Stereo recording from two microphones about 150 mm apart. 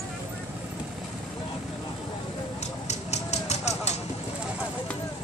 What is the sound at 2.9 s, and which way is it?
Vehicle, 45° left (ahead or behind).